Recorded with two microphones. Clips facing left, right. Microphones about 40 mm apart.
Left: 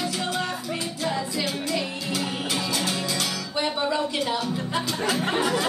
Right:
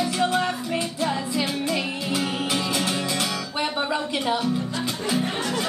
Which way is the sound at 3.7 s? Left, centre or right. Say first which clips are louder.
Left 1 dB; right.